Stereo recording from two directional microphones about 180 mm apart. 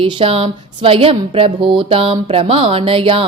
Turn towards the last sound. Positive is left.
turn(degrees=-30)  # may be behind; listen again after turning